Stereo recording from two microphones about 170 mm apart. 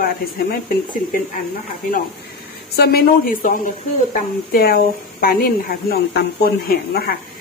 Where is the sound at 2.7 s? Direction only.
65° left (ahead or behind).